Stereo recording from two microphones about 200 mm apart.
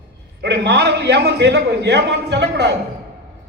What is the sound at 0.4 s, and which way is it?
A man's voice, 55° right (ahead or behind).